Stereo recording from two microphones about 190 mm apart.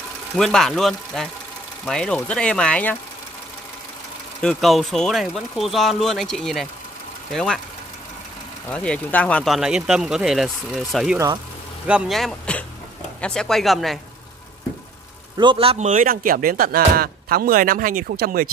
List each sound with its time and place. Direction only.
0.4 s speech: centre (ahead or behind)
4.4 s speech: centre (ahead or behind)
8.6 s speech: 5° left (ahead or behind)
15.3 s speech: 25° right (ahead or behind); by 18.5 s 50° right (ahead or behind)